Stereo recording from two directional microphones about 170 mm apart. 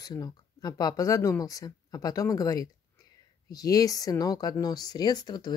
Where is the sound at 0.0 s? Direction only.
20° left (ahead or behind).